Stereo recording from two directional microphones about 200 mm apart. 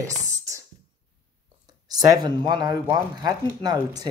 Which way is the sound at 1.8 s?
20° right (ahead or behind).